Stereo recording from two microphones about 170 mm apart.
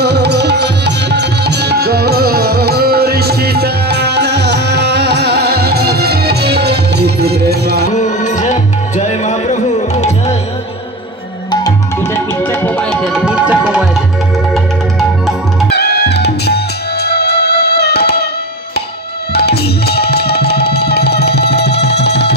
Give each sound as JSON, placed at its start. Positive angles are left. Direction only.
{"t": 0.0, "sound": "music", "side_deg": -75}
{"t": 7.9, "sound": "music", "side_deg": 45}
{"t": 11.6, "sound": "tabla", "side_deg": 15}
{"t": 14.5, "sound": "music", "side_deg": 0}
{"t": 15.7, "sound": "music", "side_deg": 75}
{"t": 19.3, "sound": "music", "side_deg": 70}